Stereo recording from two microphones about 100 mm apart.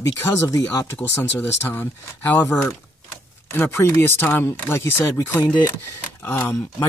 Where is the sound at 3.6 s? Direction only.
25° left (ahead or behind).